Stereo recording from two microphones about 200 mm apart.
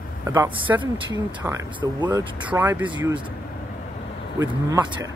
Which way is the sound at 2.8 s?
20° right (ahead or behind).